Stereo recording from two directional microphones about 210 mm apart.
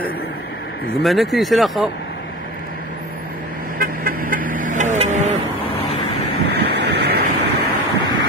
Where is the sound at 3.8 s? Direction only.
40° right (ahead or behind).